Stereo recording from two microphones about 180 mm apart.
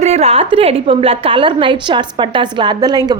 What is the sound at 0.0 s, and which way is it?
A woman's voice, 35° right (ahead or behind).